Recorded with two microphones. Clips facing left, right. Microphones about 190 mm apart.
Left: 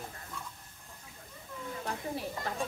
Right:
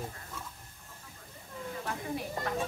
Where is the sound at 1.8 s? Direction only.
30° left (ahead or behind).